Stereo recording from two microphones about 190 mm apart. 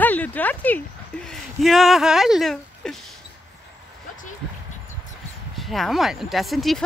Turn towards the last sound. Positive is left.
turn(degrees=0)  # may be behind; listen again after turning